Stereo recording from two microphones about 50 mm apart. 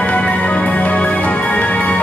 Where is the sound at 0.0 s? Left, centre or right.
Left.